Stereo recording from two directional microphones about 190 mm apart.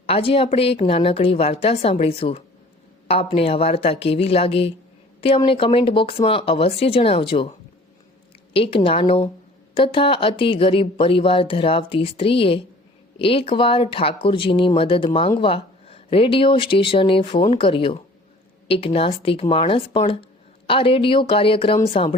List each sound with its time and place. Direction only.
0.0 s a woman's voice: 30° left (ahead or behind)
8.5 s speech: 30° left (ahead or behind)